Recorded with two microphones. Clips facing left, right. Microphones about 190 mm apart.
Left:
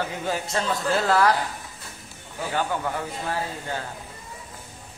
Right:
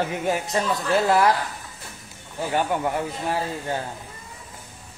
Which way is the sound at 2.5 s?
20° right (ahead or behind).